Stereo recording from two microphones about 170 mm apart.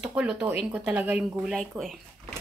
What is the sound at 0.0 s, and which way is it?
Speech, 5° right (ahead or behind).